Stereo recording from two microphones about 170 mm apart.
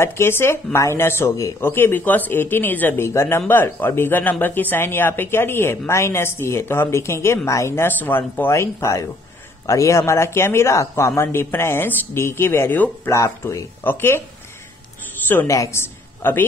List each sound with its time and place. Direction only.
0.0 s a man's voice: 15° left (ahead or behind)
15.2 s a woman's voice: 15° left (ahead or behind)